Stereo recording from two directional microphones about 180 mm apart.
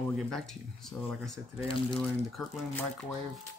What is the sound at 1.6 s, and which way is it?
Speech, 30° left (ahead or behind).